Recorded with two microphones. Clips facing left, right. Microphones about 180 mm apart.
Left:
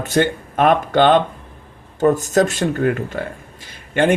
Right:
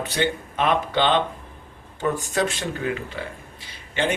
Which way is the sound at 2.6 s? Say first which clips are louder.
Left 9 dB; 55° left (ahead or behind).